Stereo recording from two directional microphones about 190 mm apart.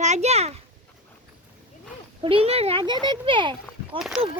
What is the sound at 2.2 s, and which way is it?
A child's voice, 30° right (ahead or behind).